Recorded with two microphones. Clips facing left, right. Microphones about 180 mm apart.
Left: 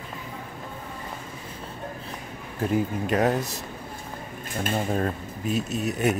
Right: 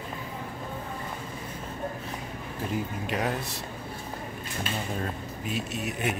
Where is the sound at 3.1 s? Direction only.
45° left (ahead or behind).